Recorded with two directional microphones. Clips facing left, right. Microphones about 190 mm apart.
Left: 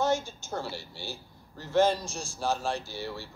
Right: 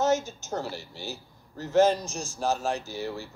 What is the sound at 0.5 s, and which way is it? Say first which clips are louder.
Speech: right 2 dB; 15° right (ahead or behind).